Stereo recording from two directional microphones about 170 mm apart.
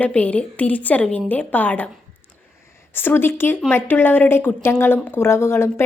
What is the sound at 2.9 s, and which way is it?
A woman's voice, 15° left (ahead or behind).